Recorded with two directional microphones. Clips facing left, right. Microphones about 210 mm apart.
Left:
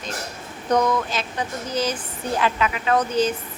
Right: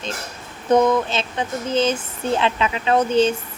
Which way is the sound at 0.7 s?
25° right (ahead or behind).